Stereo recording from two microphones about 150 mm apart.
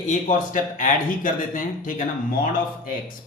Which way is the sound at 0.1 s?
60° left (ahead or behind).